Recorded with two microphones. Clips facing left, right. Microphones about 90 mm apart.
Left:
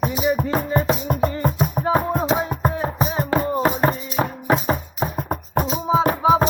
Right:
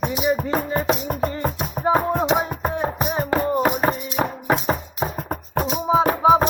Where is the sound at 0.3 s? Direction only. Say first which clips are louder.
Left 2 dB; 5° left (ahead or behind).